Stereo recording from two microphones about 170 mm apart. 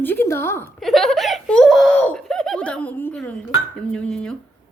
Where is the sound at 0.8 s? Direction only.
Centre (ahead or behind).